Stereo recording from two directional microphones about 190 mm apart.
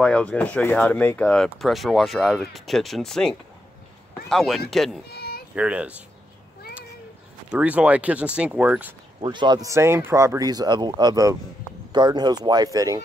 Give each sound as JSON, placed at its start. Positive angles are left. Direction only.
{"t": 0.0, "sound": "speech", "side_deg": 5}
{"t": 5.1, "sound": "a sound", "side_deg": 55}
{"t": 5.5, "sound": "speech", "side_deg": -5}
{"t": 7.5, "sound": "speech", "side_deg": -5}
{"t": 9.2, "sound": "speech", "side_deg": -25}